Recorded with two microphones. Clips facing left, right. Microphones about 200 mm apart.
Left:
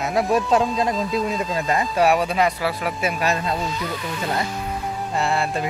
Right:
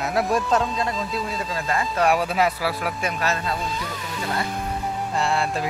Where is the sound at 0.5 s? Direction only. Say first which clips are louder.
Left 3 dB; 20° left (ahead or behind).